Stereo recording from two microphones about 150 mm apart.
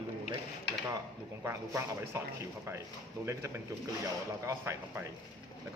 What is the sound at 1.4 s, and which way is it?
Speech, 15° right (ahead or behind).